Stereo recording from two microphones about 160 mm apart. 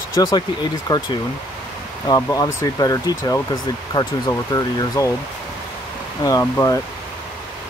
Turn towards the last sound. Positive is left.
turn(degrees=20)  # may be behind; listen again after turning